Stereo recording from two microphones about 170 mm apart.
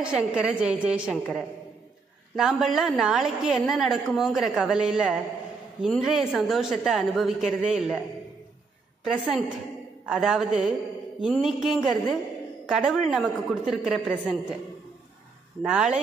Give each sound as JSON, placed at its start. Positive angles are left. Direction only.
{"t": 0.0, "sound": "a woman's voice", "side_deg": -5}
{"t": 2.3, "sound": "a woman's voice", "side_deg": 0}
{"t": 9.0, "sound": "a woman's voice", "side_deg": 0}
{"t": 15.6, "sound": "a woman's voice", "side_deg": -5}